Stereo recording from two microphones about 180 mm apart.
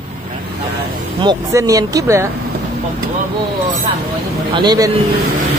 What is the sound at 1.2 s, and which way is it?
Speech, 20° right (ahead or behind).